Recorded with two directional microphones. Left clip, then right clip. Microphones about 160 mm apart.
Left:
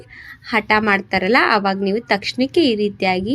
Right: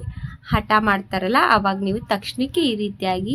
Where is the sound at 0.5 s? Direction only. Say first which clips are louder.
Left 2 dB; 10° left (ahead or behind).